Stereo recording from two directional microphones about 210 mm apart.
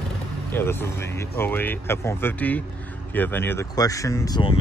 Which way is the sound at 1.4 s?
10° left (ahead or behind).